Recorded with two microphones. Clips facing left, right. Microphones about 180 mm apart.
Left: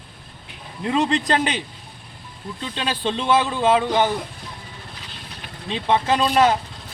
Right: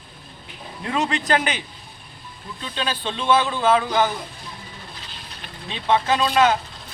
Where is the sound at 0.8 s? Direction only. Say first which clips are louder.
Left 3 dB; 25° left (ahead or behind).